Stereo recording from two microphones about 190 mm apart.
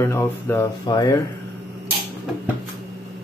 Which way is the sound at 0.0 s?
10° left (ahead or behind).